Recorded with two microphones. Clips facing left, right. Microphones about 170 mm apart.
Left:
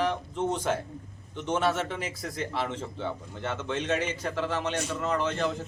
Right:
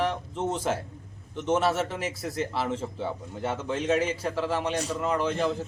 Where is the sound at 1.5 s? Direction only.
5° right (ahead or behind).